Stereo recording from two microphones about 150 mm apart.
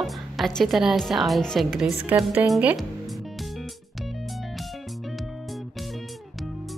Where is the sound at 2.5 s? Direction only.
5° right (ahead or behind).